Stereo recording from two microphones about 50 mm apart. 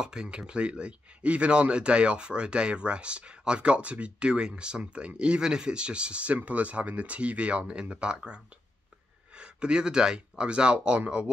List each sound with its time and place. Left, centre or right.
0.0 s speech: centre
9.4 s speech: centre